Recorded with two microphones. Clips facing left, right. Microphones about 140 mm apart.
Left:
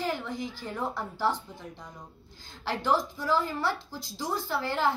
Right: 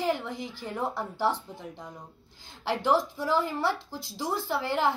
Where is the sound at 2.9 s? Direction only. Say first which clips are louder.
Right 1 dB; 20° right (ahead or behind).